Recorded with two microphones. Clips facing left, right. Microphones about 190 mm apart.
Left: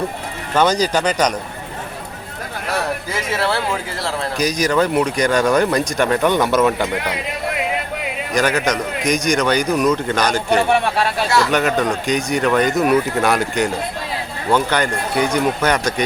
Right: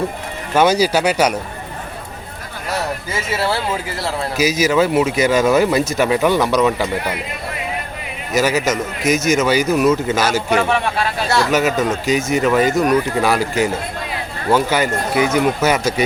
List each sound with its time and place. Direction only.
0.5 s speech: 10° right (ahead or behind)
4.4 s speech: 5° right (ahead or behind)
8.3 s speech: 5° right (ahead or behind)